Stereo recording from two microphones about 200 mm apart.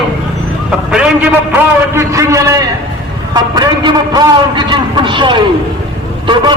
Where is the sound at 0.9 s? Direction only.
5° right (ahead or behind).